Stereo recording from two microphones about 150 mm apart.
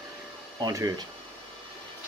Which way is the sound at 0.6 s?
25° right (ahead or behind).